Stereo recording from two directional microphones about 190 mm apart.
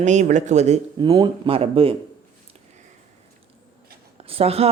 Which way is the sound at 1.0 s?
25° right (ahead or behind).